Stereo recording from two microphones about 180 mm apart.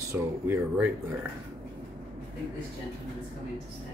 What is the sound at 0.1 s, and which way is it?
Speech, 10° right (ahead or behind).